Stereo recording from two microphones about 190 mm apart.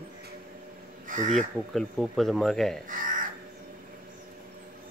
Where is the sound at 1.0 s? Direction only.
45° right (ahead or behind).